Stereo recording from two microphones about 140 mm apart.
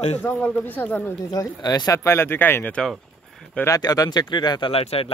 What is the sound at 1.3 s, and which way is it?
Speech, 30° left (ahead or behind).